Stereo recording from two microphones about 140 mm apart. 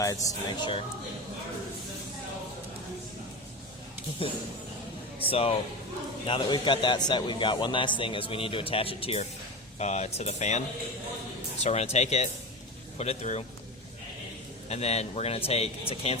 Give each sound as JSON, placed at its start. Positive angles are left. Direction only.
{"t": 0.0, "sound": "speech", "side_deg": 25}
{"t": 4.2, "sound": "a man's voice", "side_deg": 40}
{"t": 11.6, "sound": "speech", "side_deg": 50}
{"t": 14.7, "sound": "speech", "side_deg": 50}